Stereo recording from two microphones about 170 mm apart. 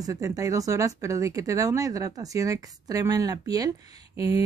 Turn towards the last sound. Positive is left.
turn(degrees=-20)  # may be behind; listen again after turning